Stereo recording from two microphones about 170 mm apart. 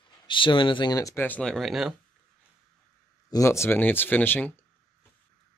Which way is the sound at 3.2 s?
20° left (ahead or behind).